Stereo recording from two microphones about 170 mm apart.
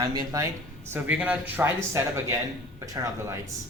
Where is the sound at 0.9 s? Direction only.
10° right (ahead or behind).